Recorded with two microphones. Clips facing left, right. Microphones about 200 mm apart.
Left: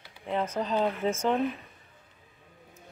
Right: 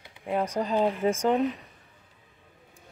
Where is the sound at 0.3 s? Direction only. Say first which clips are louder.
Right 2 dB; 15° right (ahead or behind).